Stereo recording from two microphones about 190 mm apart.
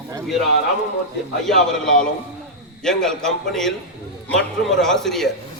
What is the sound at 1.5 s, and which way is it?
A man's voice, 5° left (ahead or behind).